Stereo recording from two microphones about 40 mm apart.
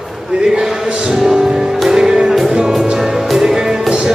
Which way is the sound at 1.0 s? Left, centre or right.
Centre.